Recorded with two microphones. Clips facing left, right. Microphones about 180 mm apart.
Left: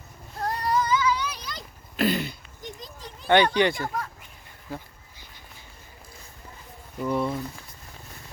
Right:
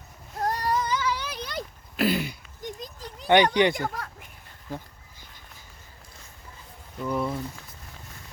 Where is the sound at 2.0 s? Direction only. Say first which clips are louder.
Even; 10° right (ahead or behind).